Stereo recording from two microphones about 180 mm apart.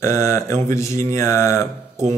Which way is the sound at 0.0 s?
15° left (ahead or behind).